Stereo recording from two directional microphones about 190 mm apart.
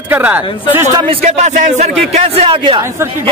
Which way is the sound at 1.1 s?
35° right (ahead or behind).